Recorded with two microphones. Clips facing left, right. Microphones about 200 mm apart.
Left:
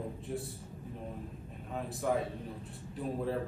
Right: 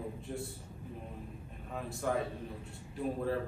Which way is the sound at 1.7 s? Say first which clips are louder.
Left 2 dB; centre (ahead or behind).